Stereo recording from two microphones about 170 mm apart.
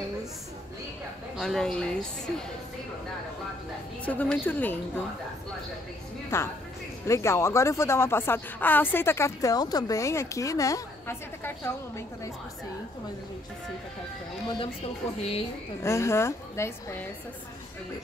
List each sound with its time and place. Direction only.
1.3 s a woman's voice: centre (ahead or behind)
4.0 s speech: 10° left (ahead or behind)
6.3 s speech: 15° left (ahead or behind)
15.8 s speech: 15° left (ahead or behind)